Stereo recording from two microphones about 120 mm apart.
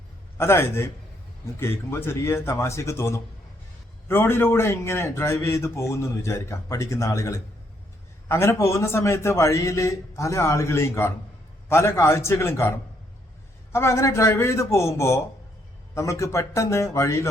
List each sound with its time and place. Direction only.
0.3 s a man's voice: 20° left (ahead or behind)
1.9 s a man's voice: 20° left (ahead or behind)